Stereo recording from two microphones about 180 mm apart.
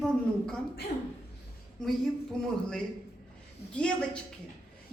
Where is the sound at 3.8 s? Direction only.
5° left (ahead or behind).